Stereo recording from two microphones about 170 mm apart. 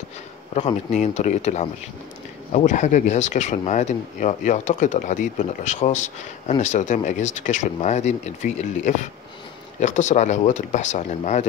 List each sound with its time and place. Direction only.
0.6 s speech: 45° left (ahead or behind)